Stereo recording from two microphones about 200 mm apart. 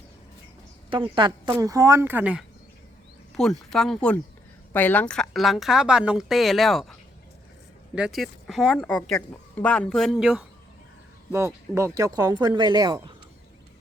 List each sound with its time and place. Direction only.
0.9 s a woman's voice: 25° right (ahead or behind); by 6.9 s centre (ahead or behind)
7.9 s speech: centre (ahead or behind); by 13.1 s 20° right (ahead or behind)